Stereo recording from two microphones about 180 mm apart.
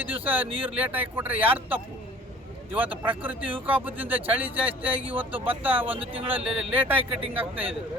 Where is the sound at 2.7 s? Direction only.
10° right (ahead or behind).